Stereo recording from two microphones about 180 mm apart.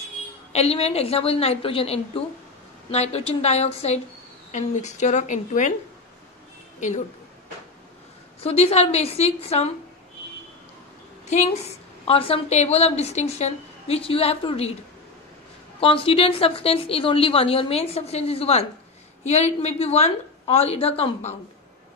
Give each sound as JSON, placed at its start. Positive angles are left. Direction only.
{"t": 0.5, "sound": "a woman's voice", "side_deg": 35}
{"t": 8.4, "sound": "a woman's voice", "side_deg": 35}
{"t": 11.2, "sound": "a woman's voice", "side_deg": 40}
{"t": 15.8, "sound": "a woman's voice", "side_deg": 30}